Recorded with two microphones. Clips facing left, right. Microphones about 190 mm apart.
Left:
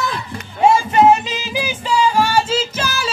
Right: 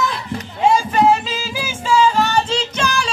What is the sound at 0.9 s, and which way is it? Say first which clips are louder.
Music: left 2 dB; 20° left (ahead or behind).